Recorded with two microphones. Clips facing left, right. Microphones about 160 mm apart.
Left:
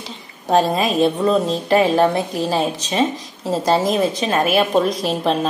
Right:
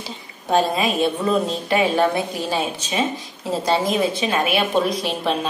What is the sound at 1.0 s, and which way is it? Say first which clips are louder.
A woman's voice: left 5 dB; 35° left (ahead or behind).